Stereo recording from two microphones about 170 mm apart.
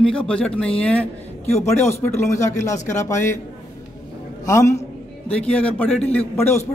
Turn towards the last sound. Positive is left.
turn(degrees=15)  # may be behind; listen again after turning